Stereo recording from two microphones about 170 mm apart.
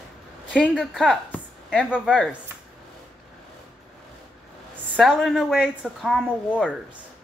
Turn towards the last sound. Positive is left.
turn(degrees=-5)  # may be behind; listen again after turning